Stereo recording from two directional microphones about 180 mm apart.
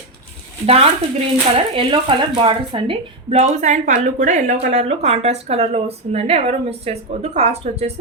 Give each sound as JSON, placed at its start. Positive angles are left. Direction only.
{"t": 0.6, "sound": "a woman's voice", "side_deg": -35}